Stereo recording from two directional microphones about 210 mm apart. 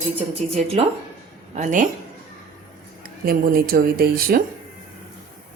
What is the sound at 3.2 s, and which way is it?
Speech, 45° right (ahead or behind).